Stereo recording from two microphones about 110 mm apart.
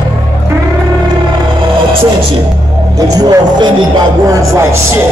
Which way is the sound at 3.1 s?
35° right (ahead or behind).